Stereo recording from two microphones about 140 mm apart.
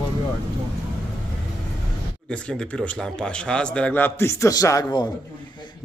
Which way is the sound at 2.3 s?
5° left (ahead or behind).